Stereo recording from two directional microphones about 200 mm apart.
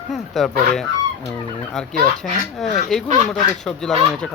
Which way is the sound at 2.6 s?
Centre (ahead or behind).